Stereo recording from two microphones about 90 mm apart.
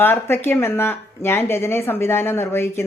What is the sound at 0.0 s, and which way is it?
Speech, 25° left (ahead or behind).